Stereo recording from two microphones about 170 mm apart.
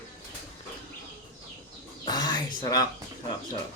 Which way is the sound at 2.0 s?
25° left (ahead or behind).